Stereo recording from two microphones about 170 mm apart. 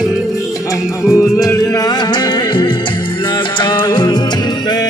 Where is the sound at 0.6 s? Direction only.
20° left (ahead or behind).